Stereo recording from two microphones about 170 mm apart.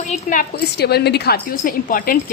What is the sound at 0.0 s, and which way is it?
Speech, 50° left (ahead or behind).